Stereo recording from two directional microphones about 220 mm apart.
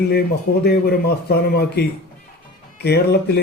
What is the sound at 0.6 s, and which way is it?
A man's voice, 45° left (ahead or behind).